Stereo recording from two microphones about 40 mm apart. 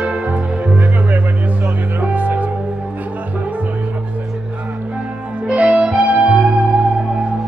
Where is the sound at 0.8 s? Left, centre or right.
Right.